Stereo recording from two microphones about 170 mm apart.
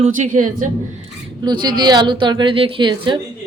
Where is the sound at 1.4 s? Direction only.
25° right (ahead or behind).